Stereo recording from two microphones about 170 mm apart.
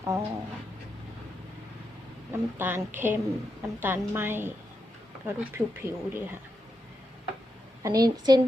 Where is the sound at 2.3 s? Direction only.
15° right (ahead or behind).